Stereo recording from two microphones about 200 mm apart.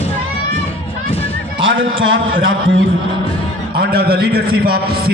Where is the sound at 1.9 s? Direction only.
80° right.